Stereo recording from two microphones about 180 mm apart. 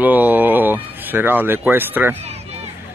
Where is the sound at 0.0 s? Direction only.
10° right (ahead or behind).